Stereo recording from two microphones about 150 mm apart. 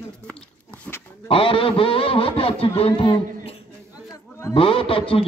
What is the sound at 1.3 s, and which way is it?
Speech, 35° left (ahead or behind).